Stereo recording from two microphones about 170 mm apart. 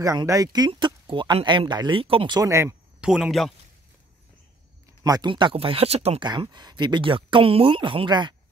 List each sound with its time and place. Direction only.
0.0 s speech: 20° right (ahead or behind)
3.0 s speech: 5° right (ahead or behind)
5.0 s speech: 25° right (ahead or behind)